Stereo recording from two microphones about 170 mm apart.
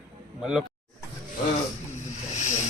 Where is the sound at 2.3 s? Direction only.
45° left (ahead or behind).